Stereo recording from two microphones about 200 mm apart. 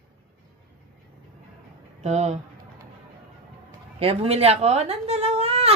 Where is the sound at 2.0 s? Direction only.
35° right (ahead or behind).